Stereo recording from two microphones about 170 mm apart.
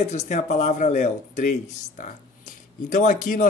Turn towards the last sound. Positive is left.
turn(degrees=50)  # may be behind; listen again after turning